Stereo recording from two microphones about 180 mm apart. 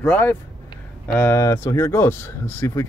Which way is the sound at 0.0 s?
10° left (ahead or behind).